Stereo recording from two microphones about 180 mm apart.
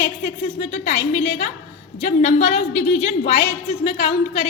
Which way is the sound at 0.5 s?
40° left (ahead or behind).